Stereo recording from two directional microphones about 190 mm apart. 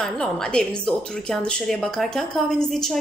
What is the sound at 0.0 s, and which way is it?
A woman's voice, 5° left (ahead or behind).